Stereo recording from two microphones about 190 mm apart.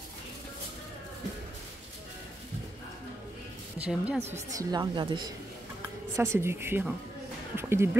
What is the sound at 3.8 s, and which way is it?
Speech, 5° right (ahead or behind).